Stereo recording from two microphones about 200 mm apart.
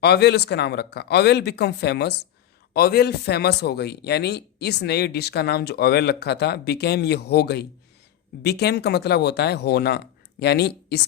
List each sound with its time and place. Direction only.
0.0 s a man's voice: 55° left (ahead or behind)